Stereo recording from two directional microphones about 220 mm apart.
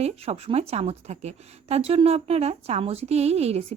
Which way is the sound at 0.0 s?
30° right (ahead or behind).